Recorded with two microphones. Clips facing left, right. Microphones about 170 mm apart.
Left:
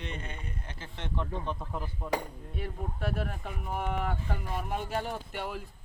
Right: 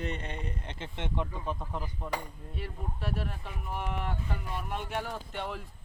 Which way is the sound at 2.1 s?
55° left (ahead or behind).